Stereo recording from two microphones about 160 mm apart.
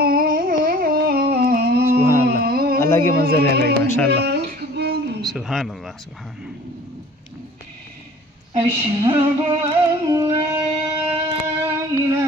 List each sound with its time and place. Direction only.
0.0 s music: 65° right (ahead or behind)
2.2 s a sound: 75° right (ahead or behind)
2.8 s a man's voice: 15° left (ahead or behind)
3.2 s speech: 75° right (ahead or behind)
3.8 s speech: 15° left (ahead or behind)
4.2 s a sound: 90° right
5.2 s speech: centre (ahead or behind)
8.5 s female singing: 30° right (ahead or behind)
10.2 s a sound: 15° right (ahead or behind)